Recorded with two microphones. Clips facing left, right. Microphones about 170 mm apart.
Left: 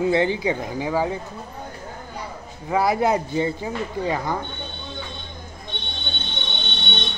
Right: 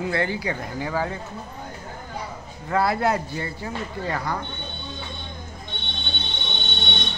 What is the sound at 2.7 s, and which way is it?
Speech, 15° left (ahead or behind).